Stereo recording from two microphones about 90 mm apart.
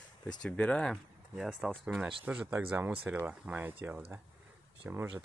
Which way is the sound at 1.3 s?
5° right (ahead or behind).